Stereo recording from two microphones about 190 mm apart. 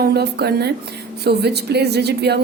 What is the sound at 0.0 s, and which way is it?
A woman's voice, 60° right (ahead or behind).